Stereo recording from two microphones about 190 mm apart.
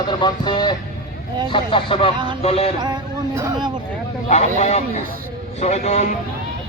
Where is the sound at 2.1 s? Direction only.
25° right (ahead or behind).